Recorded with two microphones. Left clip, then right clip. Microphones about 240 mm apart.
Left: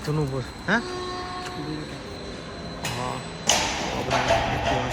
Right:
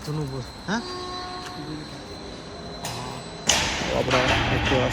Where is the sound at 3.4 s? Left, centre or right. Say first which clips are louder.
Even; left.